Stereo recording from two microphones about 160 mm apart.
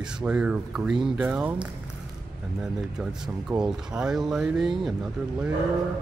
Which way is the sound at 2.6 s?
5° right (ahead or behind).